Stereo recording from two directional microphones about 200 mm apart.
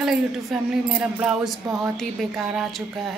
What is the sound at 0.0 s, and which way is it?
A woman's voice, centre (ahead or behind).